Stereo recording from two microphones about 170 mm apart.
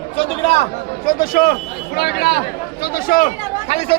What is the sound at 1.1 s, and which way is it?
A man's voice, 55° left (ahead or behind).